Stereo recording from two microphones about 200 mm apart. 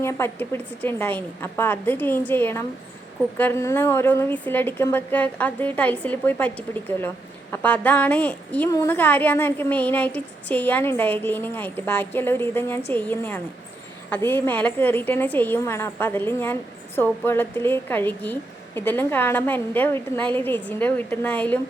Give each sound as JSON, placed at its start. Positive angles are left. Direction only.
{"t": 0.0, "sound": "a woman's voice", "side_deg": 10}